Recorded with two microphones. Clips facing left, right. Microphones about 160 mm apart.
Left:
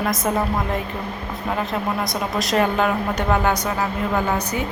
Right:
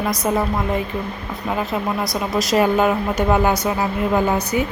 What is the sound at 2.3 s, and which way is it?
Speech, centre (ahead or behind).